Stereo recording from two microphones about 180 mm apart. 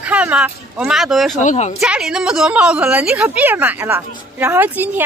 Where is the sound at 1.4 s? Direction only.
40° left (ahead or behind).